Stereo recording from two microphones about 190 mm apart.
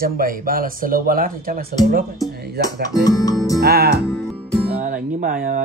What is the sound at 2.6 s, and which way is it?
Music, 60° right (ahead or behind).